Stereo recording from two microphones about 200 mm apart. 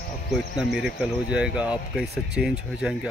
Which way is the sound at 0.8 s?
Centre (ahead or behind).